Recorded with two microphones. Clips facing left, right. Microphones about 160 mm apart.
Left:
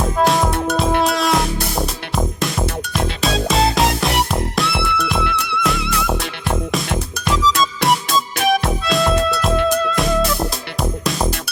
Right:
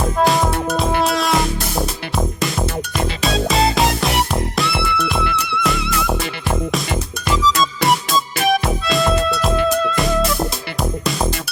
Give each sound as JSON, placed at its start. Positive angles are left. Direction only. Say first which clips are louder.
{"t": 0.0, "sound": "music", "louder": "even", "side_deg": 0}